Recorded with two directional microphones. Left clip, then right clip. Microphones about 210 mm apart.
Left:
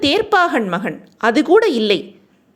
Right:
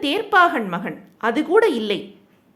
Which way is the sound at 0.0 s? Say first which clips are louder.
Left 2 dB; 25° left (ahead or behind).